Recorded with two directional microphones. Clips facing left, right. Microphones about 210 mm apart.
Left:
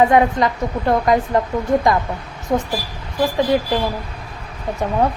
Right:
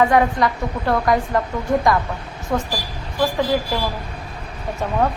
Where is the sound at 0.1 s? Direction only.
20° left (ahead or behind).